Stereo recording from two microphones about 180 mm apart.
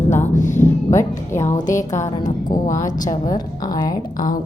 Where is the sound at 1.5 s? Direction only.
45° left (ahead or behind).